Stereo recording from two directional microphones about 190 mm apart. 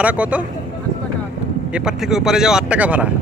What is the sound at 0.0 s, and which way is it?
Speech, 5° right (ahead or behind).